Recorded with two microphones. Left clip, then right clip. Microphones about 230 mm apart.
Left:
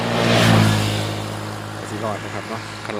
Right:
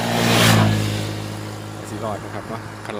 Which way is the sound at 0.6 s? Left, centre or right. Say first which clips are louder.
Left 2 dB; left.